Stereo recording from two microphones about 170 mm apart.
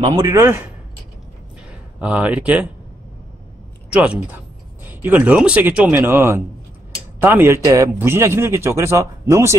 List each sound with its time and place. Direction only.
0.0 s a man's voice: 15° right (ahead or behind)
1.7 s speech: 5° right (ahead or behind)
3.9 s a man's voice: 10° right (ahead or behind)